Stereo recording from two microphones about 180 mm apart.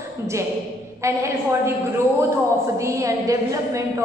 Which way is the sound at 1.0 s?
15° right (ahead or behind).